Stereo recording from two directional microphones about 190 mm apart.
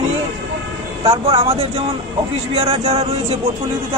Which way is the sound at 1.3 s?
30° right (ahead or behind).